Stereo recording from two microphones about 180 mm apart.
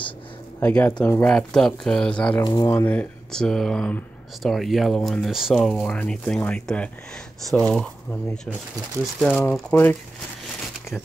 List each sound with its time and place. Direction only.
0.6 s speech: 10° left (ahead or behind)
2.4 s speech: 20° left (ahead or behind)
2.8 s speech: 10° left (ahead or behind)